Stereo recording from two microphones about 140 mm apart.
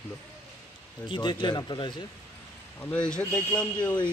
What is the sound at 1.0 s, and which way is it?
Speech, 35° left (ahead or behind).